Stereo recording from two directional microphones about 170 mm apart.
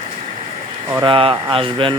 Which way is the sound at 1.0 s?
30° right (ahead or behind).